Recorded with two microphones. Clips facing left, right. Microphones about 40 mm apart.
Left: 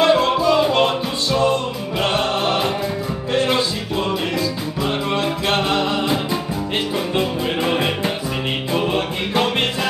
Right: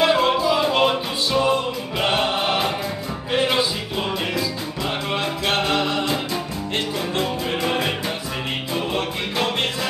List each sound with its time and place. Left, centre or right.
0.0 s music: centre
5.1 s music: centre
7.2 s music: centre